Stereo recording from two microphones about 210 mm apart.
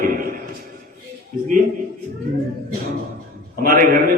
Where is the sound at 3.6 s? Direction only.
40° right (ahead or behind).